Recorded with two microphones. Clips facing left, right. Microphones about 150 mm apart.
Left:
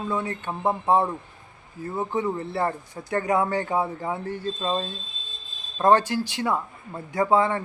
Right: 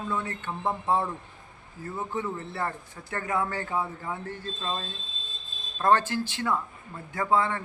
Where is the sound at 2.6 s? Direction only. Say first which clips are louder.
Left 6 dB; 35° left (ahead or behind).